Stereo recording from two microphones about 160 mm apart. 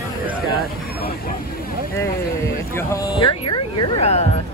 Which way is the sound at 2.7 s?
20° left (ahead or behind).